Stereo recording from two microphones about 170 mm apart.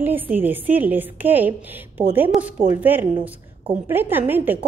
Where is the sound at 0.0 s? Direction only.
10° right (ahead or behind).